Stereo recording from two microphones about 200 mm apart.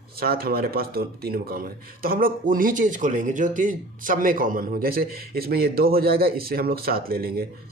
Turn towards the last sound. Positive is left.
turn(degrees=-50)  # may be behind; listen again after turning